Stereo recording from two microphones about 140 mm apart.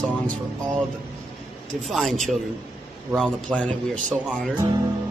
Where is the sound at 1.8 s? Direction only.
Centre (ahead or behind).